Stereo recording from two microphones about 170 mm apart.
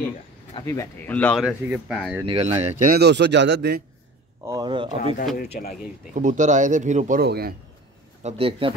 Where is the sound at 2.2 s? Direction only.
35° right (ahead or behind).